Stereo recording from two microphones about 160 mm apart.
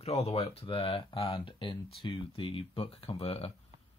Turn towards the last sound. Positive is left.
turn(degrees=35)  # may be behind; listen again after turning